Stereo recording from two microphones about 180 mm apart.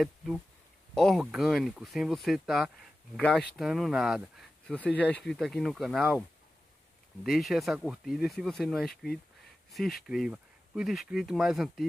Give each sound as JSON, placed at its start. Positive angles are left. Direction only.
{"t": 0.9, "sound": "speech", "side_deg": 0}
{"t": 7.2, "sound": "speech", "side_deg": 0}